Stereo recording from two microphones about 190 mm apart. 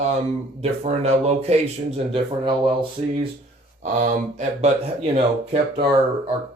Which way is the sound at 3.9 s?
40° right (ahead or behind).